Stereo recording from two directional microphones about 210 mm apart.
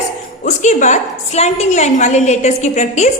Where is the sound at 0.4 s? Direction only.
35° left (ahead or behind).